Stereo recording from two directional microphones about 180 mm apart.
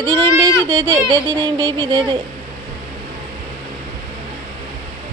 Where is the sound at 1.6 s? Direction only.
20° right (ahead or behind).